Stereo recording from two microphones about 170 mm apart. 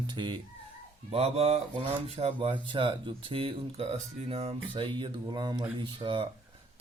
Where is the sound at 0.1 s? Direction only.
30° right (ahead or behind).